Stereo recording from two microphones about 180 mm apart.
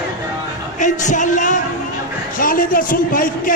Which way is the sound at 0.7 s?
45° left (ahead or behind).